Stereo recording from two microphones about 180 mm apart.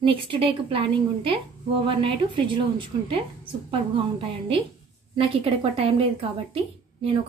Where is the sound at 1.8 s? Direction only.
30° right (ahead or behind).